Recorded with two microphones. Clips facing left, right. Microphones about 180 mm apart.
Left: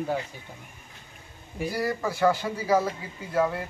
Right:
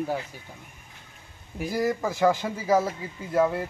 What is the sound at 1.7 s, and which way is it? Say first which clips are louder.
Speech: right 3 dB; 20° right (ahead or behind).